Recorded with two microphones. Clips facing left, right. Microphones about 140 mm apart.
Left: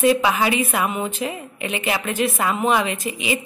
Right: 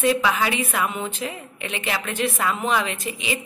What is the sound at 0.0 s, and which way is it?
A woman's voice, 20° left (ahead or behind).